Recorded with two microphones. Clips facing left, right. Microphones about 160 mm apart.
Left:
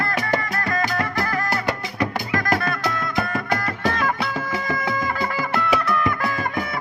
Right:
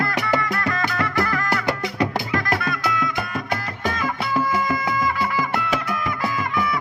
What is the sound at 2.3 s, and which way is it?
Music, 50° left (ahead or behind).